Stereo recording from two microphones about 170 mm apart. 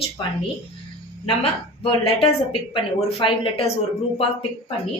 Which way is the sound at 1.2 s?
30° left (ahead or behind).